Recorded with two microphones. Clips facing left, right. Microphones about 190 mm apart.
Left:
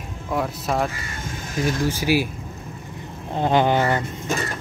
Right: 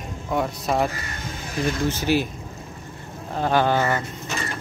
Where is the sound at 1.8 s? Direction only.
10° left (ahead or behind).